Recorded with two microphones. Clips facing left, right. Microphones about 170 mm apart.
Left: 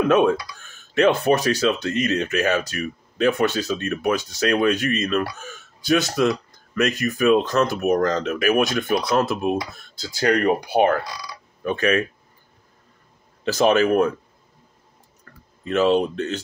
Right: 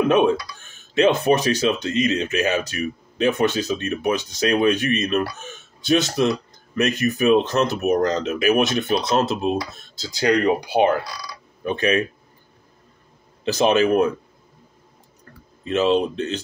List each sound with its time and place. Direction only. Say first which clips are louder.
0.0 s speech: even; 20° right (ahead or behind)
13.4 s speech: even; 20° right (ahead or behind)
15.6 s speech: even; 20° right (ahead or behind)